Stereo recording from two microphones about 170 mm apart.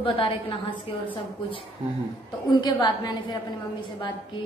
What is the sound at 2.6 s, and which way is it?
Speech, 25° left (ahead or behind).